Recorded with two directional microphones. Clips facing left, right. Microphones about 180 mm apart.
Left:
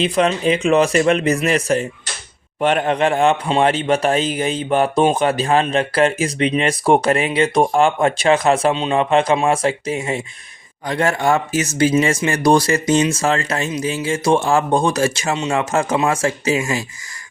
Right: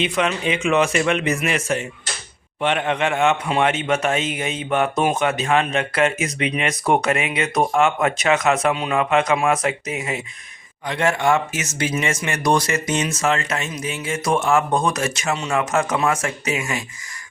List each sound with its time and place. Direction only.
0.0 s a man's voice: 35° left (ahead or behind)